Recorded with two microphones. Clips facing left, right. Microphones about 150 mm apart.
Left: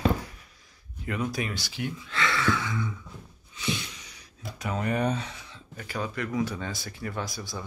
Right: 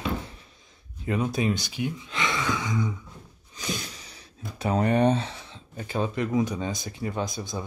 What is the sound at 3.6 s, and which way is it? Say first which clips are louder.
Speech: left 1 dB; 40° right (ahead or behind).